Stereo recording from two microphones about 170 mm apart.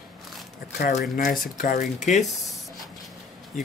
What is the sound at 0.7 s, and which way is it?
Speech, 60° left (ahead or behind).